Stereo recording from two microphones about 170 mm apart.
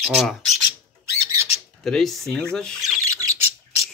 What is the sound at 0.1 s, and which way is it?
Speech, centre (ahead or behind).